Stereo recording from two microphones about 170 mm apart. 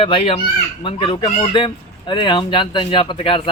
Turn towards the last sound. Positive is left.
turn(degrees=30)  # may be behind; listen again after turning